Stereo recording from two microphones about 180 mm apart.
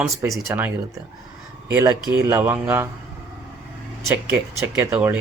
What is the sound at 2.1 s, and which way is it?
Speech, 15° right (ahead or behind).